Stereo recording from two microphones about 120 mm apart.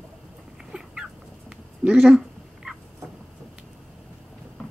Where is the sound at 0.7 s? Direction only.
5° right (ahead or behind).